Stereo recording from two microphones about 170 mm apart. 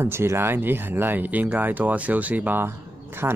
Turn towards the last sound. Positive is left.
turn(degrees=-15)  # may be behind; listen again after turning